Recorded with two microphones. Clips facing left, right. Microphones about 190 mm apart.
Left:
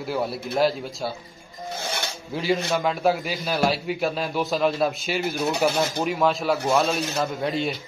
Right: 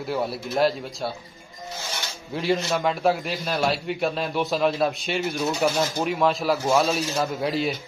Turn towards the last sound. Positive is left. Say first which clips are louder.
# right 1 dB
turn(degrees=0)  # may be behind; listen again after turning